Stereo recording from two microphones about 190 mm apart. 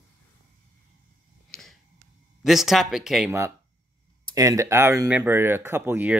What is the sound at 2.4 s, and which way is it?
Speech, centre (ahead or behind).